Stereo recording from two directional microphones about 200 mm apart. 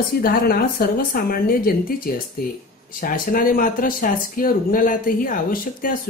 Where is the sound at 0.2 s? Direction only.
50° left (ahead or behind).